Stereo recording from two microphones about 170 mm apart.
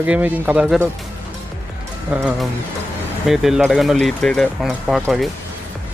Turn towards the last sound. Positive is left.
turn(degrees=0)  # may be behind; listen again after turning